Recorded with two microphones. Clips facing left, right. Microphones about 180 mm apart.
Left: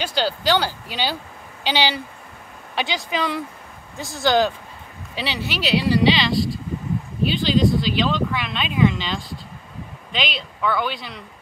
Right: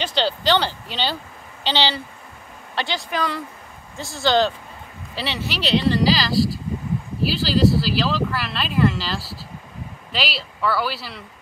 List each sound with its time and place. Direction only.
0.0 s speech: 10° left (ahead or behind)
5.2 s speech: centre (ahead or behind)